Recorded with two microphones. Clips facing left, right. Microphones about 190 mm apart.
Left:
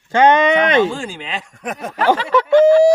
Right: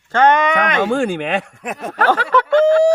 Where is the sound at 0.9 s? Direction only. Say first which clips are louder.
Right 9 dB; 60° right (ahead or behind).